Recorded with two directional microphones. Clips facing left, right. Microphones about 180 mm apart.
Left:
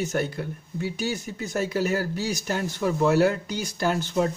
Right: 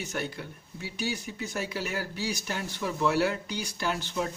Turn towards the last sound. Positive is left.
turn(degrees=45)  # may be behind; listen again after turning